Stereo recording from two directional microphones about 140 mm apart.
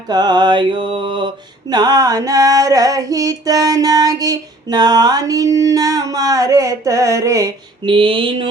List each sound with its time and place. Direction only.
0.1 s music: 30° right (ahead or behind)
1.7 s female singing: 25° right (ahead or behind)
7.9 s music: 40° right (ahead or behind)